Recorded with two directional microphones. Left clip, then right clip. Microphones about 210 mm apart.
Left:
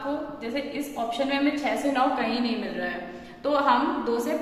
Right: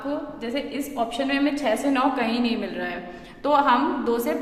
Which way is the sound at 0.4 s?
45° right (ahead or behind).